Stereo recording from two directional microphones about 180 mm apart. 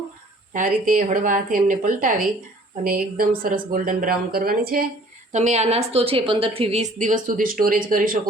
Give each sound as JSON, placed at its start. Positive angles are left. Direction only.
{"t": 0.5, "sound": "speech", "side_deg": -45}
{"t": 5.3, "sound": "a woman's voice", "side_deg": -40}